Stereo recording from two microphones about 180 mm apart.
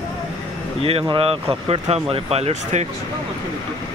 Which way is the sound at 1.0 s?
30° right (ahead or behind).